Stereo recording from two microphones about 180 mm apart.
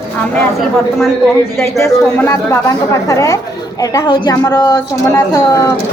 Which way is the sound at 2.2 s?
15° left (ahead or behind).